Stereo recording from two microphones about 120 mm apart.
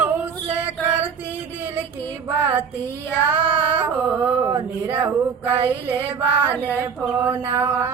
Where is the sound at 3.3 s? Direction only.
15° right (ahead or behind).